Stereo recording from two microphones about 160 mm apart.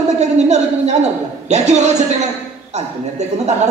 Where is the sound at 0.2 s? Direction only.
45° right (ahead or behind).